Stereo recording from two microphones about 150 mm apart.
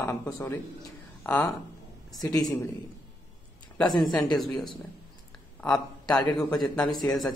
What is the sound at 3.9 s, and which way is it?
Speech, 25° left (ahead or behind).